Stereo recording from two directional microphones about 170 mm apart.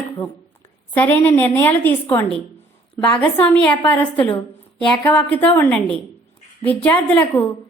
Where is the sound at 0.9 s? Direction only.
10° left (ahead or behind).